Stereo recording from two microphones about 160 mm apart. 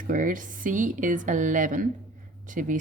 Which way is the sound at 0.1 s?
55° right (ahead or behind).